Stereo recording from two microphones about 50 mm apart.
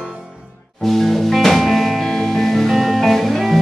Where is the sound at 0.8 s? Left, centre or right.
Centre.